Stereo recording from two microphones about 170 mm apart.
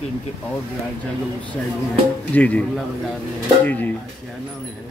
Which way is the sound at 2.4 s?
10° left (ahead or behind).